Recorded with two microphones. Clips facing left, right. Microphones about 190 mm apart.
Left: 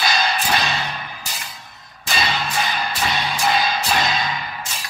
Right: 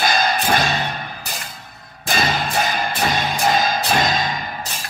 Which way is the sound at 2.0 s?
45° right (ahead or behind).